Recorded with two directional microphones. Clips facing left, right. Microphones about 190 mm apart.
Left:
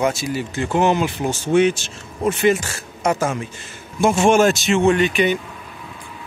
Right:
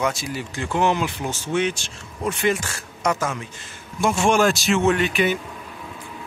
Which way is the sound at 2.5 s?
25° left (ahead or behind).